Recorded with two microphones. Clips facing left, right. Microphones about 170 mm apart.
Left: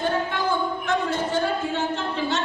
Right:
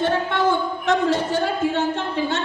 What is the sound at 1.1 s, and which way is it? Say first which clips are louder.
Speech: right 2 dB; 65° right (ahead or behind).